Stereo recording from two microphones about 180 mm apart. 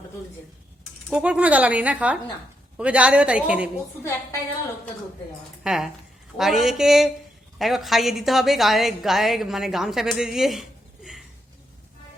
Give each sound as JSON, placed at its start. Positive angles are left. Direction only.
{"t": 1.1, "sound": "speech", "side_deg": -5}
{"t": 4.0, "sound": "a woman's voice", "side_deg": 15}
{"t": 5.6, "sound": "a woman's voice", "side_deg": 0}